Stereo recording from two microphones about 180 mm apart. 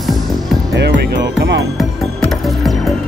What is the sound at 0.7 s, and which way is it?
Music, 70° right (ahead or behind).